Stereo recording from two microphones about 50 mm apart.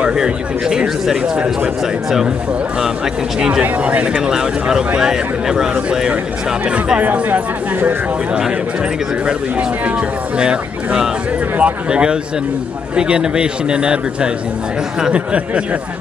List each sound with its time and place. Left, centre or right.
0.0 s speech: centre
3.3 s speech: centre
4.3 s speech: centre
7.0 s speech: right
9.2 s speech: right